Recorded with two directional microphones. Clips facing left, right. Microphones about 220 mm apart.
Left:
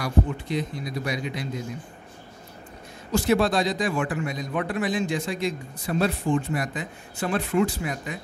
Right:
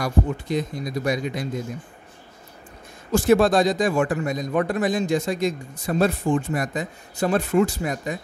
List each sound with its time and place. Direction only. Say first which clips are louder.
0.0 s a man's voice: right 2 dB; 45° right (ahead or behind)
3.1 s a man's voice: right 5 dB; 50° right (ahead or behind)